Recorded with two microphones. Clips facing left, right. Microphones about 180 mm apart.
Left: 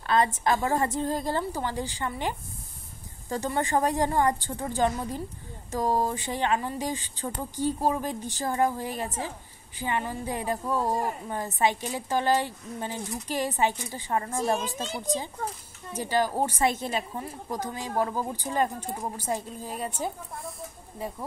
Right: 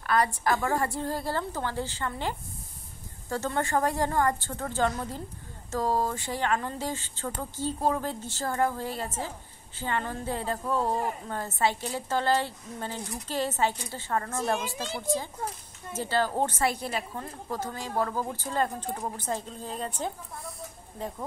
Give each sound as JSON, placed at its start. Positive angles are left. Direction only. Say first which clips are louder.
{"t": 0.0, "sound": "a woman's voice", "louder": "left 2 dB", "side_deg": 20}